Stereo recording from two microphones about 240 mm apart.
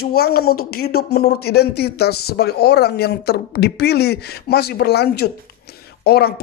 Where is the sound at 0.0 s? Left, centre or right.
Left.